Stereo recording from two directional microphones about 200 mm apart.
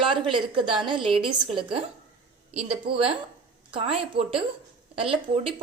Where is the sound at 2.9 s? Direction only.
50° right (ahead or behind).